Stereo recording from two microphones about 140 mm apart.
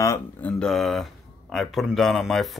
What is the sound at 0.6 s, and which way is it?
Speech, centre (ahead or behind).